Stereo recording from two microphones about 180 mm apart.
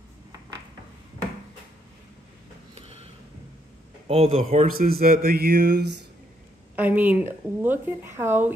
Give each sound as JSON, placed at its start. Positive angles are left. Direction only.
{"t": 4.1, "sound": "speech", "side_deg": -35}
{"t": 4.6, "sound": "speech", "side_deg": -55}
{"t": 6.7, "sound": "speech", "side_deg": -10}